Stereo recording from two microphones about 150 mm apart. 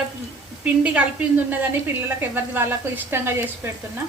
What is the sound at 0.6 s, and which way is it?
A woman's voice, 10° right (ahead or behind).